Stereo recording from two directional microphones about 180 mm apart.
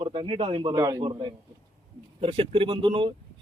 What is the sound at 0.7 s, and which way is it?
Speech, 20° right (ahead or behind).